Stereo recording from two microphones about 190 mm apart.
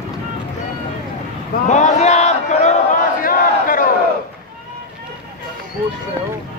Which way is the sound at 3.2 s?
50° left (ahead or behind).